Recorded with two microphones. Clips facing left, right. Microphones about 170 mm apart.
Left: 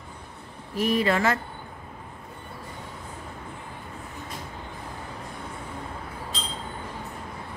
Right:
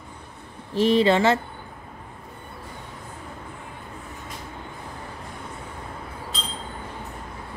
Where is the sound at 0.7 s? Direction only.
25° right (ahead or behind).